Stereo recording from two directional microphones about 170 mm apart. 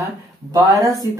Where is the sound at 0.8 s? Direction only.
20° right (ahead or behind).